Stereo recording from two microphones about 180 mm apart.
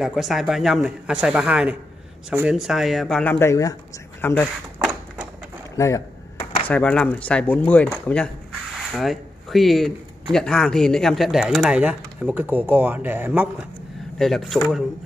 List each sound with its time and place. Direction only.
0.0 s speech: centre (ahead or behind)
5.8 s speech: 15° left (ahead or behind)
6.3 s a sound: 30° left (ahead or behind)
6.7 s speech: 5° left (ahead or behind)
8.9 s speech: centre (ahead or behind)
14.1 s speech: centre (ahead or behind)